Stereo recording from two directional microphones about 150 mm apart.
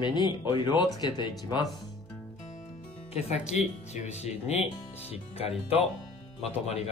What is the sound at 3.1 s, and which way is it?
Speech, 45° left (ahead or behind).